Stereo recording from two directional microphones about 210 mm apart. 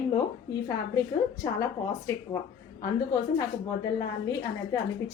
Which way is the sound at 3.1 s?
15° left (ahead or behind).